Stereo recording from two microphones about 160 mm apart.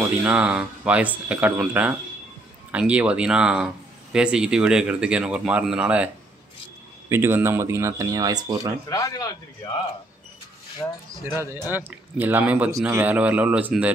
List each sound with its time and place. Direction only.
0.2 s speech: 5° right (ahead or behind)
7.1 s speech: 15° right (ahead or behind)
8.8 s speech: 20° left (ahead or behind)
10.8 s speech: 10° left (ahead or behind)
11.3 s speech: 15° right (ahead or behind)